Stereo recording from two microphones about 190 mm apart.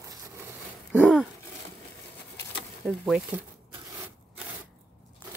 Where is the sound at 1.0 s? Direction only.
Centre (ahead or behind).